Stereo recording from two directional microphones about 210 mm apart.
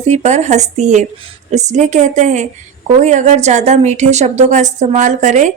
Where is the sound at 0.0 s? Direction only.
35° right (ahead or behind).